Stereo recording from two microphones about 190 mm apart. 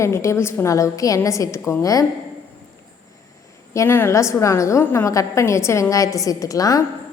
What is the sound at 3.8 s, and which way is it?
A woman's voice, 10° left (ahead or behind).